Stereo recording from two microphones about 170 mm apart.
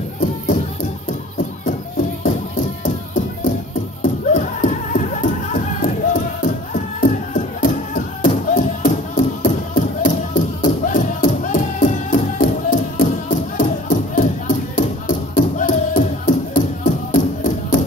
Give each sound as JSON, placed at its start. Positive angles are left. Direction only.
{"t": 2.8, "sound": "music", "side_deg": 45}